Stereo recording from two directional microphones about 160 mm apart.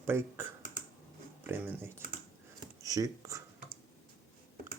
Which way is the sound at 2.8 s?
20° right (ahead or behind).